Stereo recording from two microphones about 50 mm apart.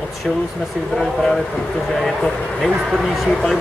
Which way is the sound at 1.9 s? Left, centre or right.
Centre.